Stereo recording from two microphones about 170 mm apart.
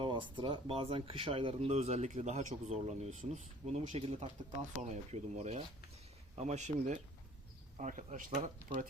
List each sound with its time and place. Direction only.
0.0 s speech: 30° right (ahead or behind); by 8.9 s 50° right (ahead or behind)